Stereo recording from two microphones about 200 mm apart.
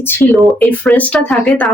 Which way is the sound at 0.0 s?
10° left (ahead or behind).